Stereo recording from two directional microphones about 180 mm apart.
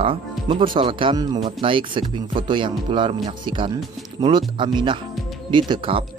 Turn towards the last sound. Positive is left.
turn(degrees=-30)  # may be behind; listen again after turning